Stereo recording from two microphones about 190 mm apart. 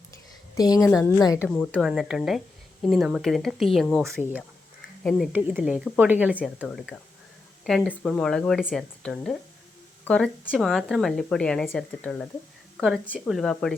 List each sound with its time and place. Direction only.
0.5 s speech: 20° left (ahead or behind)
0.8 s speech: 5° right (ahead or behind)
1.0 s a woman's voice: 20° left (ahead or behind)
1.5 s a woman's voice: 5° left (ahead or behind)